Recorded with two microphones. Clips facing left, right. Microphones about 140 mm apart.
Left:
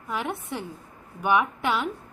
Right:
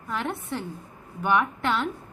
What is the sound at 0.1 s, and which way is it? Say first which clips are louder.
A woman's voice: even; 10° left (ahead or behind).